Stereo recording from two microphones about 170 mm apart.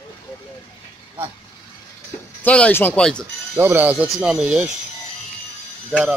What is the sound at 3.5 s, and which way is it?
Speech, 10° right (ahead or behind).